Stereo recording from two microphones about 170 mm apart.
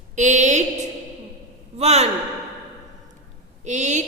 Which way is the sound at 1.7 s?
40° right (ahead or behind).